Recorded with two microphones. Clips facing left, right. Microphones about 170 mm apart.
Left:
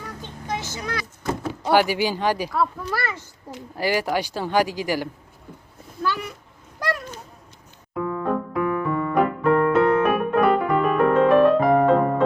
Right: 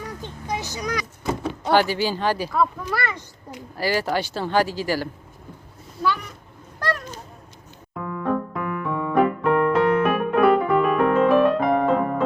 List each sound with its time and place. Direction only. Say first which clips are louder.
0.2 s vehicle: left 1 dB; 15° right (ahead or behind)
1.3 s speech: even; 5° left (ahead or behind)
6.0 s speech: right 2 dB; 5° left (ahead or behind)
8.0 s electric piano: even; centre (ahead or behind)